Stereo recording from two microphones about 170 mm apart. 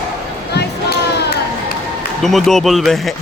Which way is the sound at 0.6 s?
75° left (ahead or behind).